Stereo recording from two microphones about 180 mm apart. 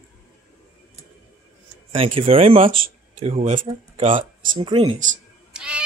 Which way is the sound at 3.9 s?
30° right (ahead or behind).